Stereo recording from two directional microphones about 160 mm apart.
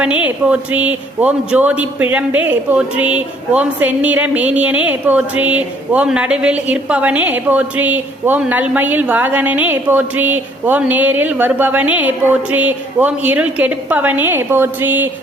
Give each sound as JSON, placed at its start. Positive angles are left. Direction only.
{"t": 0.0, "sound": "a man's voice", "side_deg": -10}